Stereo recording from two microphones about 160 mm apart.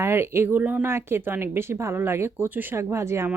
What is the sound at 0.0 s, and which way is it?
Speech, 15° right (ahead or behind).